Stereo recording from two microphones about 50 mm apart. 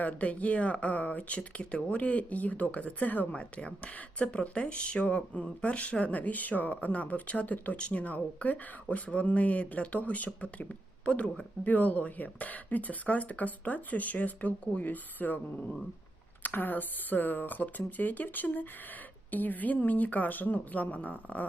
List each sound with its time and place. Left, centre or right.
0.0 s speech: left